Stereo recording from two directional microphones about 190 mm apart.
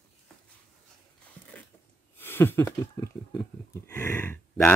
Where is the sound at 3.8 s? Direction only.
10° left (ahead or behind).